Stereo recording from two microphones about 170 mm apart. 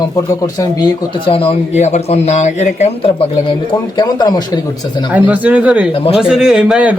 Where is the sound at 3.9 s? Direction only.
25° left (ahead or behind).